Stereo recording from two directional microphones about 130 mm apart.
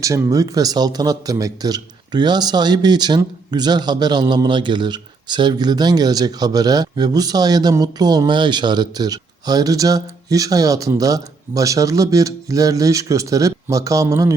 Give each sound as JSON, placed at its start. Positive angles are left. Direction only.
{"t": 0.0, "sound": "a man's voice", "side_deg": -25}